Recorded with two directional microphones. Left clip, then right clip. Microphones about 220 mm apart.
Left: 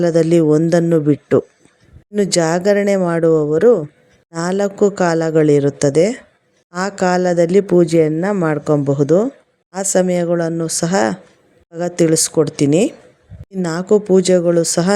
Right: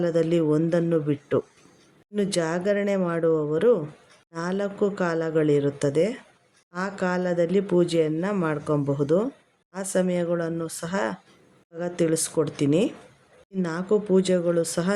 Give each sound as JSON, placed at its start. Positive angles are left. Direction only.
{"t": 0.0, "sound": "speech", "side_deg": 30}